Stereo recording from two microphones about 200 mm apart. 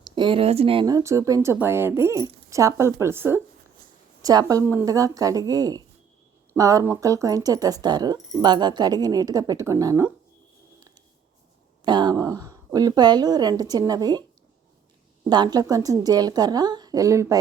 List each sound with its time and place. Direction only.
0.0 s speech: 25° right (ahead or behind)
11.9 s speech: 20° right (ahead or behind)
15.3 s speech: 20° right (ahead or behind)